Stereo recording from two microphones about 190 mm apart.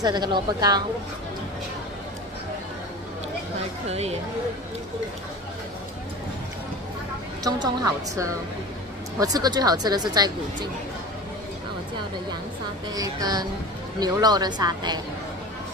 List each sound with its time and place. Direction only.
0.0 s speech: 20° right (ahead or behind)
3.8 s speech: 35° right (ahead or behind)
7.4 s speech: 20° right (ahead or behind)
12.9 s speech: 20° right (ahead or behind)